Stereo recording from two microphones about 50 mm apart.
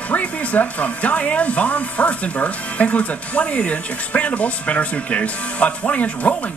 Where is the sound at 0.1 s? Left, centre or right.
Left.